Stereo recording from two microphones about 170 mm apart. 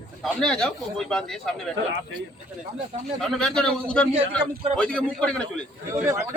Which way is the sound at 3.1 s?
Centre (ahead or behind).